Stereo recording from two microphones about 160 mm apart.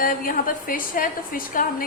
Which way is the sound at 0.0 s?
60° left (ahead or behind).